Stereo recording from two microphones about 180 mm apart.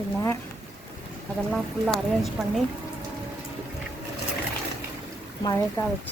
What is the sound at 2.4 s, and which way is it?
Speech, centre (ahead or behind).